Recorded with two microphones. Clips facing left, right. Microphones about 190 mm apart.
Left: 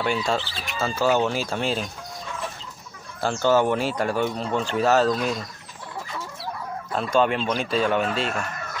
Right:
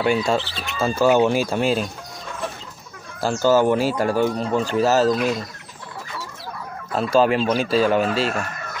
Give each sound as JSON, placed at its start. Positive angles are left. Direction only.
{"t": 0.0, "sound": "speech", "side_deg": -45}
{"t": 0.3, "sound": "speech", "side_deg": -10}
{"t": 3.2, "sound": "speech", "side_deg": -5}
{"t": 3.9, "sound": "speech", "side_deg": -35}
{"t": 4.7, "sound": "speech", "side_deg": 0}
{"t": 7.2, "sound": "speech", "side_deg": -5}